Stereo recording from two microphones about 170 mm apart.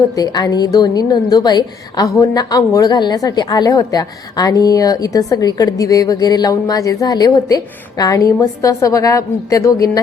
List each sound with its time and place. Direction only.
0.2 s a woman's voice: 20° left (ahead or behind)